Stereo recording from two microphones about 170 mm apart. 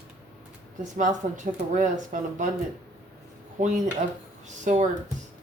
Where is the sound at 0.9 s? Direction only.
45° right (ahead or behind).